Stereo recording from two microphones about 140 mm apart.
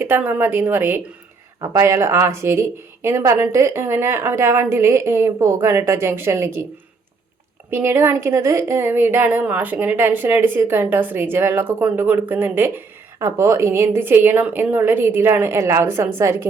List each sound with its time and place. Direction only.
0.0 s a woman's voice: 15° right (ahead or behind)
7.7 s speech: 15° right (ahead or behind)